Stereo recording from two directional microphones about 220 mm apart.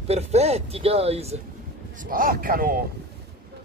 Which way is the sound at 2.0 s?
40° right (ahead or behind).